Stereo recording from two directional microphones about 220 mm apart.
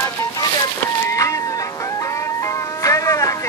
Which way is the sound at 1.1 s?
15° left (ahead or behind).